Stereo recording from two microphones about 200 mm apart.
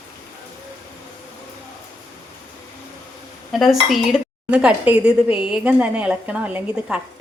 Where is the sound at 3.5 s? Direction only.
Centre (ahead or behind).